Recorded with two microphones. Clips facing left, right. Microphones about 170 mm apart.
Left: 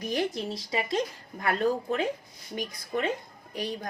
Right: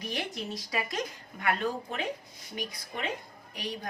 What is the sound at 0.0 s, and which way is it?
Speech, 45° left (ahead or behind).